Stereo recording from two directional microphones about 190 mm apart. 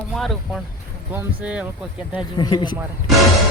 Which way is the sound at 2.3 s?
25° left (ahead or behind).